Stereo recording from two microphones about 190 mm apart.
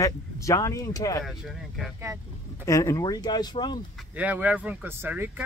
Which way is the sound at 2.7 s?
15° left (ahead or behind).